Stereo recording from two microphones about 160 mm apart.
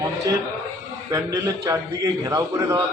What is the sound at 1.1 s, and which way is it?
A man's voice, 20° right (ahead or behind).